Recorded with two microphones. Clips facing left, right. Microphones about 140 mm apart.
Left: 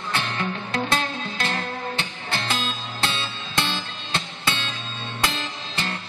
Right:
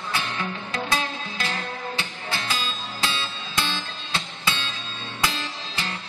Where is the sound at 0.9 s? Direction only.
55° left (ahead or behind).